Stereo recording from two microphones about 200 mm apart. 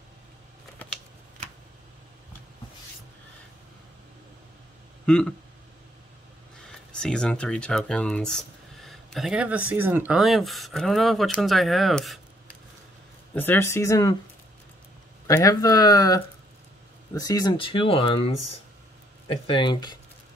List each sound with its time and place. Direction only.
5.0 s a sound: 5° left (ahead or behind)
6.9 s speech: 5° left (ahead or behind)
13.3 s speech: 10° left (ahead or behind)
15.2 s speech: 15° left (ahead or behind)